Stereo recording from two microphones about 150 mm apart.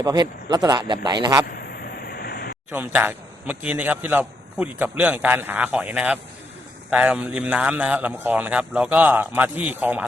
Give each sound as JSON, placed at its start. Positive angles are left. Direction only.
{"t": 0.0, "sound": "a man's voice", "side_deg": -25}
{"t": 1.5, "sound": "vehicle", "side_deg": 90}
{"t": 2.6, "sound": "a man's voice", "side_deg": -10}